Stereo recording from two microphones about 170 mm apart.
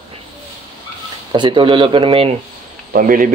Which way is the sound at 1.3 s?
25° right (ahead or behind).